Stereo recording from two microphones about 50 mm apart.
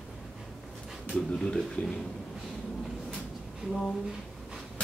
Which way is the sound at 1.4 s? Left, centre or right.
Centre.